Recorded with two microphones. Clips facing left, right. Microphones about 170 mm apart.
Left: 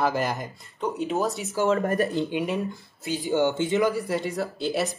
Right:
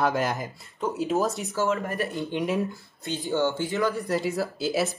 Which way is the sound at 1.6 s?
40° left (ahead or behind).